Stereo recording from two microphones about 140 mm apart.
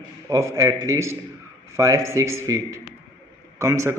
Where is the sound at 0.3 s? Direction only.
25° right (ahead or behind).